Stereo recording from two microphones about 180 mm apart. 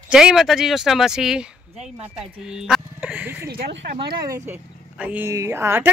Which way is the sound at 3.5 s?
60° right (ahead or behind).